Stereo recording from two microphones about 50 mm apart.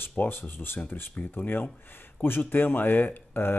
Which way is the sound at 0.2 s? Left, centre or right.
Left.